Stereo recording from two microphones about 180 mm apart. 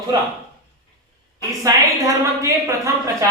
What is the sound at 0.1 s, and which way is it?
Speech, 25° right (ahead or behind).